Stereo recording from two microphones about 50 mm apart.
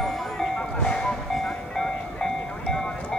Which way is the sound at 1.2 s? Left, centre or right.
Centre.